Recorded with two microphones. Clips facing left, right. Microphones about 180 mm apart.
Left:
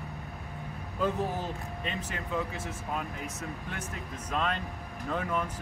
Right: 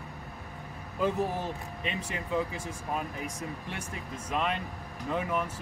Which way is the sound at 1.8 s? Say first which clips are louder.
Right 2 dB; 15° right (ahead or behind).